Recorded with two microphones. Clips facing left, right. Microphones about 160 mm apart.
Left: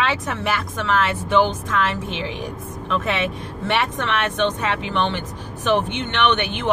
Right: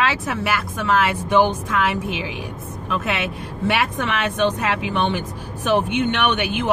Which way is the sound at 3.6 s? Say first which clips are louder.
Right 1 dB; 10° right (ahead or behind).